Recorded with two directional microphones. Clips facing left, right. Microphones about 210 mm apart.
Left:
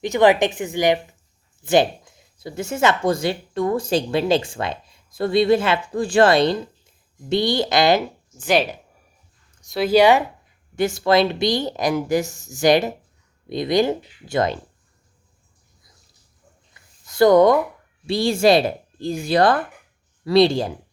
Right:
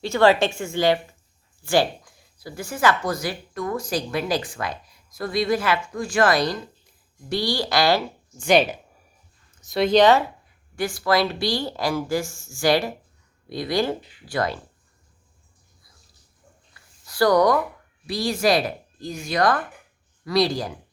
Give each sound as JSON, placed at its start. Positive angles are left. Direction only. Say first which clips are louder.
{"t": 0.0, "sound": "a woman's voice", "louder": "left 2 dB", "side_deg": 15}
{"t": 8.4, "sound": "a woman's voice", "louder": "right 1 dB", "side_deg": 0}
{"t": 10.8, "sound": "speech", "louder": "left 4 dB", "side_deg": 25}
{"t": 16.7, "sound": "a sound", "louder": "left 5 dB", "side_deg": 25}
{"t": 18.0, "sound": "speech", "louder": "left 5 dB", "side_deg": 25}